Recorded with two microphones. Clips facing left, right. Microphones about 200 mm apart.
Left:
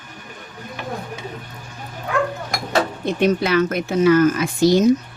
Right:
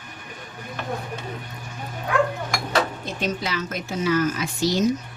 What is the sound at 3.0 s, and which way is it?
Speech, 60° left (ahead or behind).